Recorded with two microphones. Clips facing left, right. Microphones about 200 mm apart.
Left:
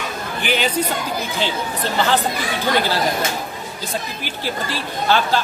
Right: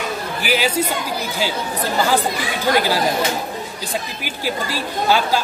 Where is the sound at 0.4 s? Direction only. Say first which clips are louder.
Even; 5° right (ahead or behind).